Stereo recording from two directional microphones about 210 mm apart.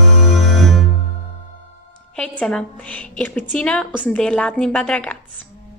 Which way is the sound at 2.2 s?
5° left (ahead or behind).